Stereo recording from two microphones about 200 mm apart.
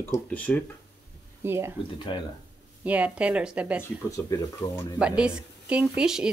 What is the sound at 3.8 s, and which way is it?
Speech, 15° left (ahead or behind).